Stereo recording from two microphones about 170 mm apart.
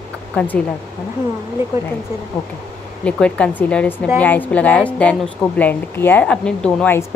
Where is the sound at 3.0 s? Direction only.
5° left (ahead or behind).